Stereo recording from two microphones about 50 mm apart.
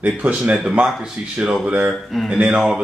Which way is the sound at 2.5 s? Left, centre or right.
Centre.